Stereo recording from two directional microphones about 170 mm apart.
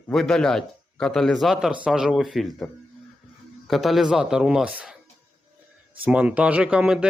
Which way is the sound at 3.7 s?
Centre (ahead or behind).